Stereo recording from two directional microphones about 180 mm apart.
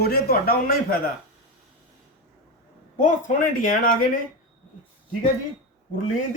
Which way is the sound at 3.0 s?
45° left (ahead or behind).